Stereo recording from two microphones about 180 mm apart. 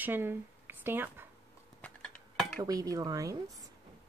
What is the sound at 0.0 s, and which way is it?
Speech, 10° right (ahead or behind).